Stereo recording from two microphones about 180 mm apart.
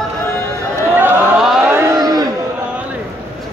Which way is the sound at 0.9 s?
10° right (ahead or behind).